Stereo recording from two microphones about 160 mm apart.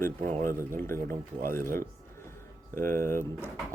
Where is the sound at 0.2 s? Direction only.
55° right (ahead or behind).